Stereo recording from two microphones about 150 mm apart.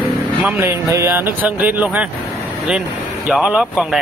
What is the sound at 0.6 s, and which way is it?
Speech, 20° right (ahead or behind).